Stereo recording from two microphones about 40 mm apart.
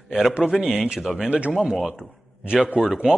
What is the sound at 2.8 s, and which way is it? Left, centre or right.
Speech, right.